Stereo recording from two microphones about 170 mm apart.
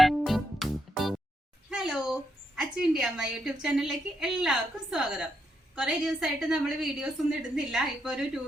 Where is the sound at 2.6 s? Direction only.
5° right (ahead or behind).